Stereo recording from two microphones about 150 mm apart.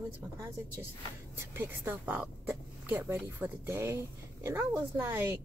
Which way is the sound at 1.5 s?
15° right (ahead or behind).